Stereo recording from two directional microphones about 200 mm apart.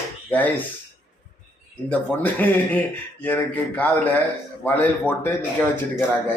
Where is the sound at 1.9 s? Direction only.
10° left (ahead or behind).